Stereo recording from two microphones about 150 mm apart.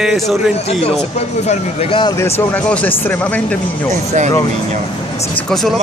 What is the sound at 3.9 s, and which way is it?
Speech, 55° right (ahead or behind).